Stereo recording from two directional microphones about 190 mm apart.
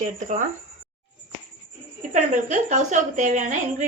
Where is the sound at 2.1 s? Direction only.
40° right (ahead or behind).